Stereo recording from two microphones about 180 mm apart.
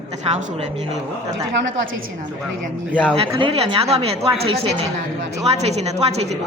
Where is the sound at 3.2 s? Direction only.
30° right (ahead or behind).